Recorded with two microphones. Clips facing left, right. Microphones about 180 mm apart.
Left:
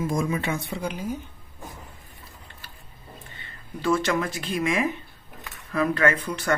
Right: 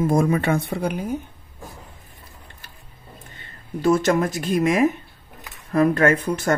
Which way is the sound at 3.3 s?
45° right (ahead or behind).